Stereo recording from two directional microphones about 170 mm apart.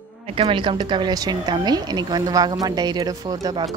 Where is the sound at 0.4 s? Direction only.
30° right (ahead or behind).